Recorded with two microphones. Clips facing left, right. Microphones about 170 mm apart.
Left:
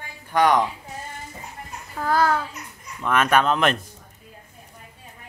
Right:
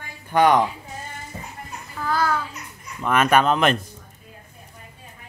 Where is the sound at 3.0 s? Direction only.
5° right (ahead or behind).